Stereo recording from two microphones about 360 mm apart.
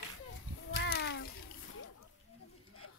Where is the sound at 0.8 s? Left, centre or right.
Left.